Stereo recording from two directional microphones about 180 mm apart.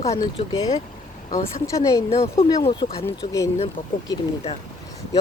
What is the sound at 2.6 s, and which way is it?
Speech, 30° left (ahead or behind).